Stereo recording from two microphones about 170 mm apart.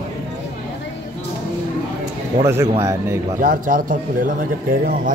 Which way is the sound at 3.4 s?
50° right (ahead or behind).